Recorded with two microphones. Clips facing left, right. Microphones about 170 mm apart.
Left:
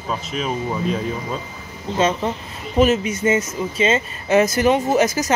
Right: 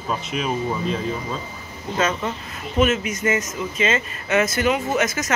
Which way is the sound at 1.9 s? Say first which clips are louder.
Left 4 dB; 25° left (ahead or behind).